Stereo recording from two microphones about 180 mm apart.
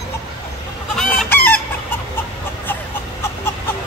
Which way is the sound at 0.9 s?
10° left (ahead or behind).